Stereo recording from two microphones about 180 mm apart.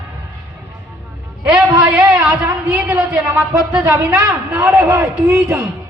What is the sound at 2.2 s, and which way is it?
A man's voice, 10° right (ahead or behind).